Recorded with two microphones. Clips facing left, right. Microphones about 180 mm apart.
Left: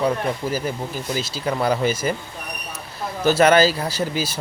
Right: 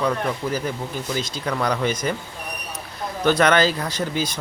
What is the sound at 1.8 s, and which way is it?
Speech, 5° left (ahead or behind).